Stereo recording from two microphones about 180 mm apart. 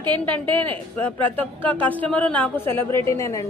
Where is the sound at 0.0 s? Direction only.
25° right (ahead or behind).